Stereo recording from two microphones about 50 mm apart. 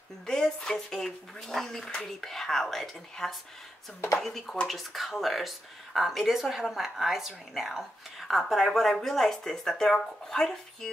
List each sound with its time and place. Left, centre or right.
0.3 s speech: centre